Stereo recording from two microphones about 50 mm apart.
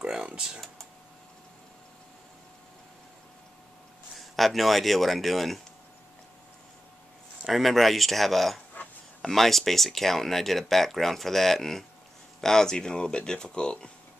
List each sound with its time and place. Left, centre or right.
0.0 s speech: centre
4.4 s speech: centre
7.4 s speech: centre
8.8 s a sound: left
9.3 s speech: centre